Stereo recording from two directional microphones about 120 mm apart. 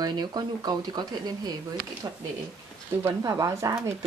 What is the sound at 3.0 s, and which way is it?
Speech, 25° right (ahead or behind).